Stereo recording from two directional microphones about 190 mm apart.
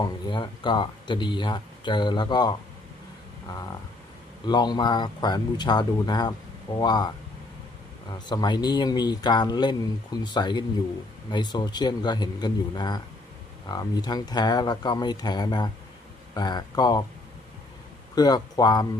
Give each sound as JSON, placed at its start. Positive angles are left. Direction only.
{"t": 0.0, "sound": "speech", "side_deg": 25}
{"t": 4.4, "sound": "speech", "side_deg": 20}
{"t": 8.1, "sound": "speech", "side_deg": 20}
{"t": 18.1, "sound": "speech", "side_deg": 20}